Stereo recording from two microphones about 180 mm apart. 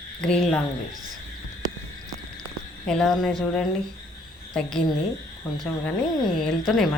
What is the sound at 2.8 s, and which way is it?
Speech, 5° left (ahead or behind).